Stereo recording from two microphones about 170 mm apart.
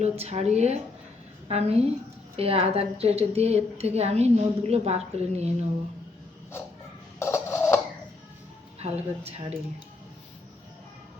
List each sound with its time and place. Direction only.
0.0 s a woman's voice: 40° right (ahead or behind)
7.2 s a sound: 15° left (ahead or behind)
8.8 s a woman's voice: 35° right (ahead or behind)